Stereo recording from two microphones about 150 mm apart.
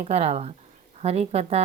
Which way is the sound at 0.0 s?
45° right (ahead or behind).